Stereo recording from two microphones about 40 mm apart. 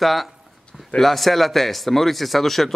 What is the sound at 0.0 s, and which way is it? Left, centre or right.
Speech, centre.